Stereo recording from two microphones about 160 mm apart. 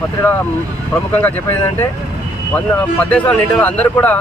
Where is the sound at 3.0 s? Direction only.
10° left (ahead or behind).